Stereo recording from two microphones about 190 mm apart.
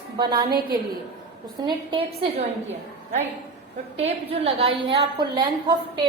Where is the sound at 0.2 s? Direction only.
25° right (ahead or behind).